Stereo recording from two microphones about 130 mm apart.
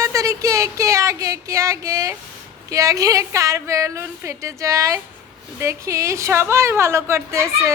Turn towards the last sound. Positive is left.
turn(degrees=-20)  # may be behind; listen again after turning